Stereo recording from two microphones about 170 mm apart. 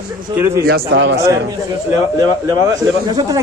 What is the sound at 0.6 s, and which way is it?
Speech, 75° right (ahead or behind).